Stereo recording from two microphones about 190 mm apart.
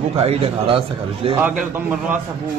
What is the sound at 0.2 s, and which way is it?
A man's voice, 30° right (ahead or behind).